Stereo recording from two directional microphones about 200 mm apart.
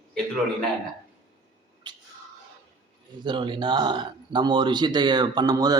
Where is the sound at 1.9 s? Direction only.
20° right (ahead or behind).